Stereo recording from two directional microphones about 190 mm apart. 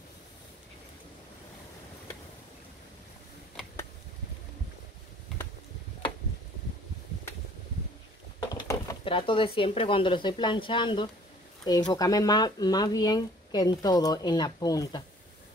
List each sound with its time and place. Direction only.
8.4 s speech: 20° left (ahead or behind)